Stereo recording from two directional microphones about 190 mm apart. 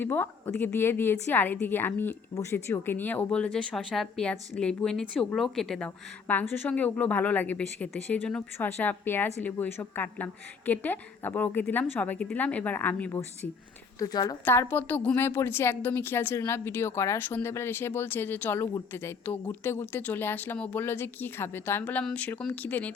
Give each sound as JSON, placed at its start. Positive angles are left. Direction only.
{"t": 0.0, "sound": "a woman's voice", "side_deg": 10}